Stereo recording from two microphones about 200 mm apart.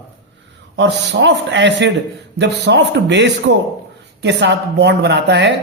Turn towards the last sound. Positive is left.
turn(degrees=-60)  # may be behind; listen again after turning